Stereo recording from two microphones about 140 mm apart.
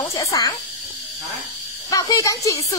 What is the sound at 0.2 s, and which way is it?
Speech, 25° left (ahead or behind).